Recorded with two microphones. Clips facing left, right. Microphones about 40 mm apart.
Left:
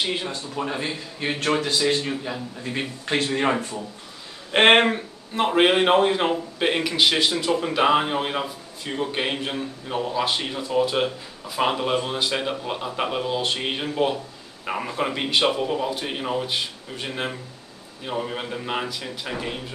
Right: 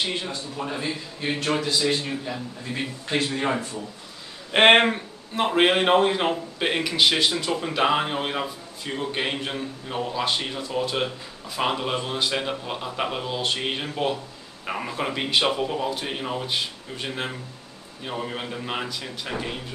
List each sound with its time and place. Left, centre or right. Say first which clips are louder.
0.0 s a man's voice: left 2 dB; centre
0.7 s speech: left 1 dB; left
1.7 s a man's voice: left 2 dB; left
4.5 s a man's voice: even; centre